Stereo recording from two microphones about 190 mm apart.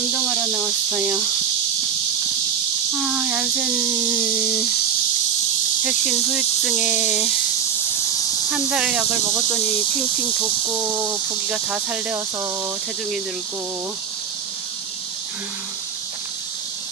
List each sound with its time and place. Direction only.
0.1 s snake: centre (ahead or behind)
3.0 s cricket: 5° right (ahead or behind)
5.9 s speech: 5° right (ahead or behind)
8.5 s speech: 5° right (ahead or behind)
10.8 s speech: 15° right (ahead or behind)
11.5 s speech: 5° right (ahead or behind)